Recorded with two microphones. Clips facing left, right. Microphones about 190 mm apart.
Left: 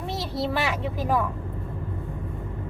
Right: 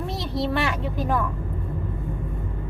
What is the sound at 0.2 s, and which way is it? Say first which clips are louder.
Speech: right 2 dB; centre (ahead or behind).